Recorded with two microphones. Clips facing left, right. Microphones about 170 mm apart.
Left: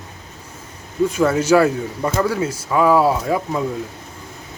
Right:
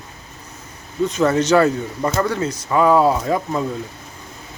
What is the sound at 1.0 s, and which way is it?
Speech, 10° left (ahead or behind).